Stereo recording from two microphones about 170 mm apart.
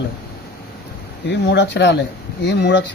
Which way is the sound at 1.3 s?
90° left.